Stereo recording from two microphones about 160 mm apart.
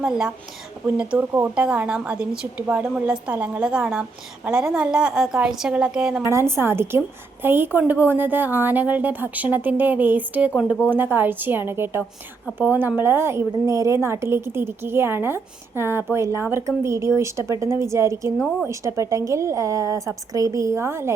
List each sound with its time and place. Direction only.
0.0 s a woman's voice: 5° right (ahead or behind)
6.2 s a woman's voice: 15° right (ahead or behind)